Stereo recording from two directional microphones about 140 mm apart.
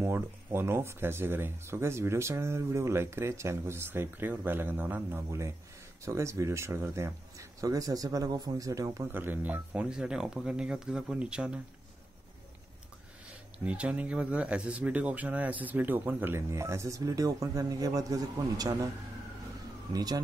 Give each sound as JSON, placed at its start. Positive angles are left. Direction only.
{"t": 0.0, "sound": "speech", "side_deg": -15}
{"t": 13.7, "sound": "speech", "side_deg": -10}
{"t": 19.9, "sound": "speech", "side_deg": -25}